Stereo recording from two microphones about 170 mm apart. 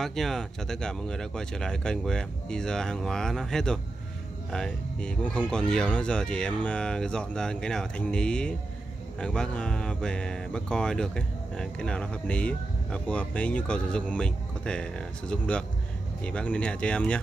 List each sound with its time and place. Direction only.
0.0 s speech: centre (ahead or behind)